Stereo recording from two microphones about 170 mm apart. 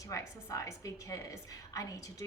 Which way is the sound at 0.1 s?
20° left (ahead or behind).